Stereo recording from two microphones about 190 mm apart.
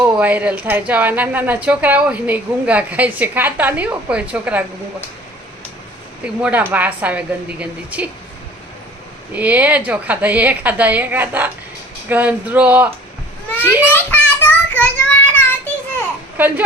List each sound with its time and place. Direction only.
0.0 s a woman's voice: 10° right (ahead or behind)
6.2 s a woman's voice: 5° right (ahead or behind)
9.3 s a woman's voice: 10° right (ahead or behind)
13.9 s child singing: 10° left (ahead or behind)
16.4 s a woman's voice: 10° right (ahead or behind)